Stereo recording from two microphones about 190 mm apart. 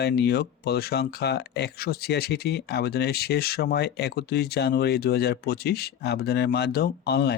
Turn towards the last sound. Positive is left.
turn(degrees=55)  # may be behind; listen again after turning